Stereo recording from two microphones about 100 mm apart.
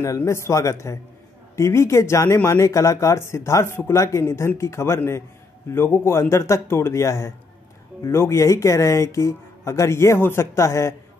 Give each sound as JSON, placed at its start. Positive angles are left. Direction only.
{"t": 0.0, "sound": "speech", "side_deg": 30}